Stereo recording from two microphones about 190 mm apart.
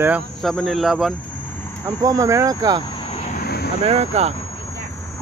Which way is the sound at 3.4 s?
55° left (ahead or behind).